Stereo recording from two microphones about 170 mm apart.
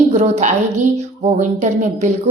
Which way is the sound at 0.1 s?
45° right (ahead or behind).